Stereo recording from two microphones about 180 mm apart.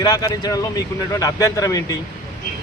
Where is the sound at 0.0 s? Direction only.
20° left (ahead or behind).